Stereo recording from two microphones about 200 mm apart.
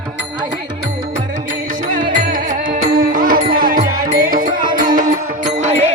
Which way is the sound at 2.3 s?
45° right (ahead or behind).